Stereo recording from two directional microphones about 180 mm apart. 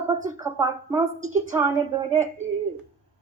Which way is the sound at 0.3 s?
20° right (ahead or behind).